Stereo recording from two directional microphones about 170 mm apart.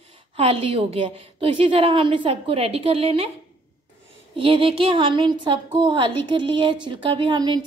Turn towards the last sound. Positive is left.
turn(degrees=-25)  # may be behind; listen again after turning